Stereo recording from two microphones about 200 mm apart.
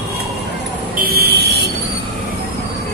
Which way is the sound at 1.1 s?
50° right (ahead or behind).